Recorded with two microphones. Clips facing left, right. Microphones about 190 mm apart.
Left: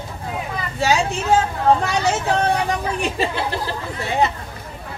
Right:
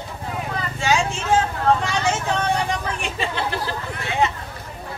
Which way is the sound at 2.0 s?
35° left (ahead or behind).